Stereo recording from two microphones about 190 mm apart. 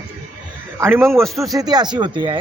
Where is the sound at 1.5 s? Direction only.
20° right (ahead or behind).